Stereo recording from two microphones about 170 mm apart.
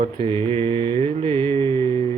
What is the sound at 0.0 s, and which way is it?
Mantra, 30° right (ahead or behind).